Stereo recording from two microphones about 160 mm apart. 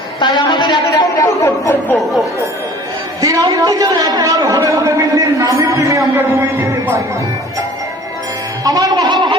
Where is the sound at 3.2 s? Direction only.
20° right (ahead or behind).